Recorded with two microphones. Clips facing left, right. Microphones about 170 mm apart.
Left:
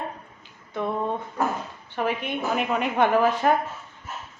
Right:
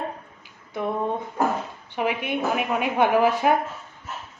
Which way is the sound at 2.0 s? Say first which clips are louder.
Right 2 dB; 10° right (ahead or behind).